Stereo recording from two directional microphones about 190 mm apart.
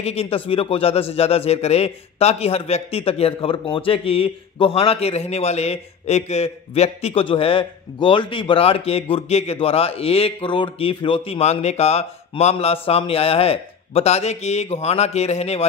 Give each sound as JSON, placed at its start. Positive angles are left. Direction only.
{"t": 0.0, "sound": "a man's voice", "side_deg": 30}